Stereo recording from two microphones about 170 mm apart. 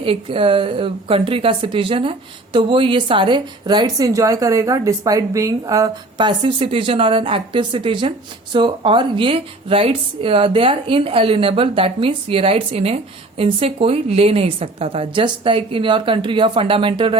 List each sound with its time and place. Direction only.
0.0 s a woman's voice: 30° right (ahead or behind)